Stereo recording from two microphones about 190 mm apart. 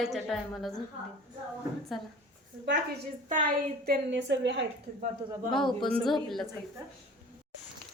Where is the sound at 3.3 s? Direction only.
45° right (ahead or behind).